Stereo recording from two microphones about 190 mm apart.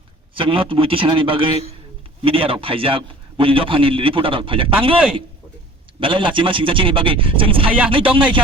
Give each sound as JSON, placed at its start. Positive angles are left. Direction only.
{"t": 0.3, "sound": "a man's voice", "side_deg": -25}
{"t": 6.0, "sound": "a man's voice", "side_deg": -25}